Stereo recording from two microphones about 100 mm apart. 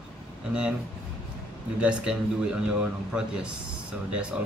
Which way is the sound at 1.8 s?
10° right (ahead or behind).